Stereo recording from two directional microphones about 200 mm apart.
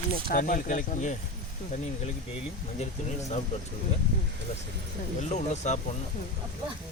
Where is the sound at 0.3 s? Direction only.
45° left (ahead or behind).